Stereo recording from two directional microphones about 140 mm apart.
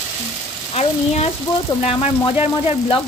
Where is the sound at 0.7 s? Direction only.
45° left (ahead or behind).